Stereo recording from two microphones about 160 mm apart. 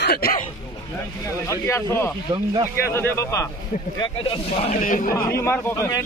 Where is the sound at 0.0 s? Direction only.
80° left.